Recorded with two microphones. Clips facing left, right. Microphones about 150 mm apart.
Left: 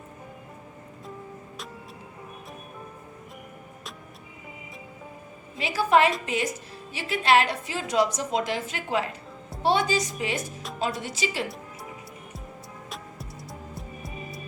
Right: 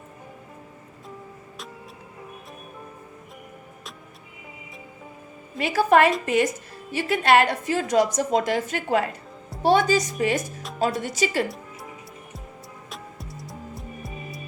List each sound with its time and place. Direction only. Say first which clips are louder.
5.5 s a woman's voice: right 3 dB; 55° right (ahead or behind)
13.7 s music: right 1 dB; centre (ahead or behind)